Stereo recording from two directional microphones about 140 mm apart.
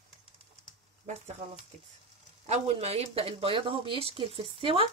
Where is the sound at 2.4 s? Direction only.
50° right (ahead or behind).